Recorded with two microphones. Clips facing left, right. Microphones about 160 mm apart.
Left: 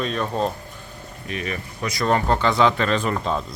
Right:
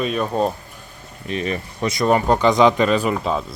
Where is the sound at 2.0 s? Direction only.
15° right (ahead or behind).